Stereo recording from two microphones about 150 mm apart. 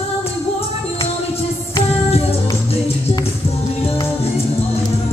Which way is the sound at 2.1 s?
45° left (ahead or behind).